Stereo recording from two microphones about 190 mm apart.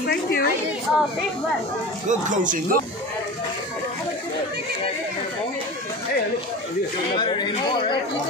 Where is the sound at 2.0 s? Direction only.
40° right (ahead or behind).